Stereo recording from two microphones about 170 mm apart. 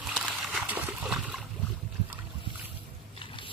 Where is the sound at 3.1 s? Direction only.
30° left (ahead or behind).